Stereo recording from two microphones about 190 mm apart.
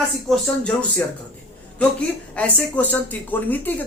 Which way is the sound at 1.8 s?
5° left (ahead or behind).